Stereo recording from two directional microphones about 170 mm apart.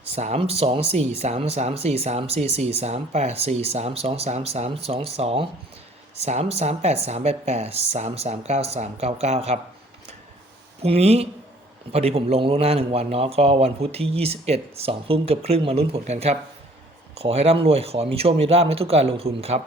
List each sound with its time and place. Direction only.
0.0 s speech: 40° right (ahead or behind)
10.8 s speech: 35° right (ahead or behind)